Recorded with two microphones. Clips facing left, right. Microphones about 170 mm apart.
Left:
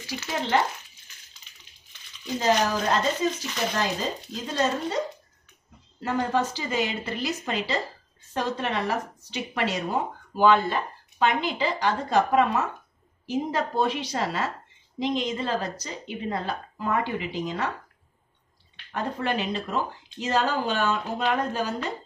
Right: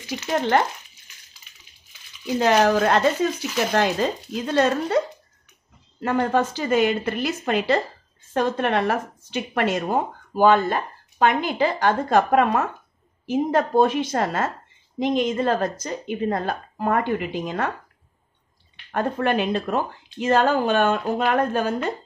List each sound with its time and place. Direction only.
0.3 s speech: 50° right (ahead or behind)
1.4 s coin: 5° right (ahead or behind)
2.3 s speech: 70° right (ahead or behind)
6.0 s speech: 55° right (ahead or behind)
18.9 s speech: 50° right (ahead or behind)